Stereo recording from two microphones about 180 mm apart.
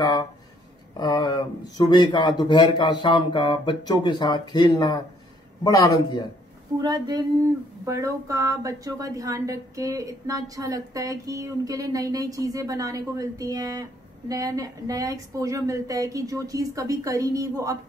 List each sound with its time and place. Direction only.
0.9 s speech: 25° left (ahead or behind)
6.8 s a woman's voice: 25° right (ahead or behind)